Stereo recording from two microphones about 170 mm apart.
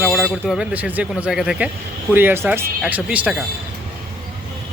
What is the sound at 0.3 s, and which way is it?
Speech, centre (ahead or behind).